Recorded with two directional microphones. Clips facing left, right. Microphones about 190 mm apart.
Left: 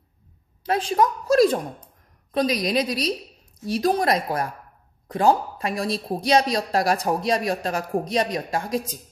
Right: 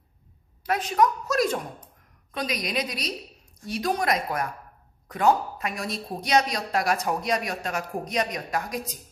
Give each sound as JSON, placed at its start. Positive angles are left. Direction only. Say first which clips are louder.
{"t": 0.7, "sound": "a woman's voice", "louder": "left 2 dB", "side_deg": 30}